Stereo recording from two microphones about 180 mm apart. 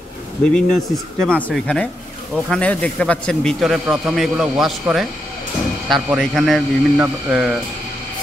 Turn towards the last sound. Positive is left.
turn(degrees=-5)  # may be behind; listen again after turning